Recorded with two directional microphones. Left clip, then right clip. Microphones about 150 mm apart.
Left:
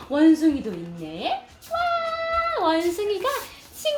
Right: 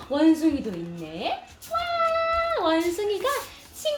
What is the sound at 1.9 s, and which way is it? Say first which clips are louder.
Cat: right 1 dB; 30° left (ahead or behind).